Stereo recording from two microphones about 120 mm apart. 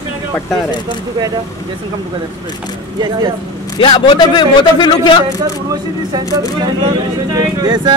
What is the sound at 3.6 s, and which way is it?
A man's voice, 40° left (ahead or behind).